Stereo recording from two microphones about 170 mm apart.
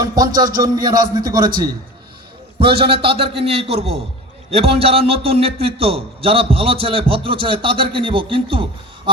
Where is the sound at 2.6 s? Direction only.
30° right (ahead or behind).